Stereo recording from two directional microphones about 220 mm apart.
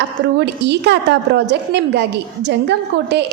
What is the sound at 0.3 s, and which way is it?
A woman's voice, 50° right (ahead or behind).